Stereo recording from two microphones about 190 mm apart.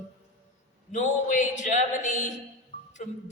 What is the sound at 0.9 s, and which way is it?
Speech, 40° left (ahead or behind).